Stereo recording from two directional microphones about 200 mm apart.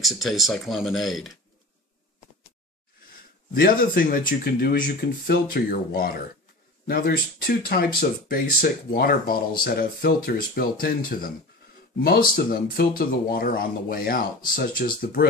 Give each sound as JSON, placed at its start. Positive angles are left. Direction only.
{"t": 0.0, "sound": "speech", "side_deg": 0}
{"t": 3.5, "sound": "speech", "side_deg": 45}